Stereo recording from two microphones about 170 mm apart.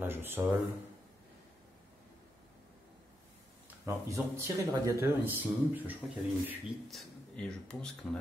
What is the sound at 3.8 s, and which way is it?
Speech, 15° right (ahead or behind).